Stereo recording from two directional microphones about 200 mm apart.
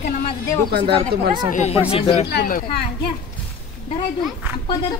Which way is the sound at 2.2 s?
50° left (ahead or behind).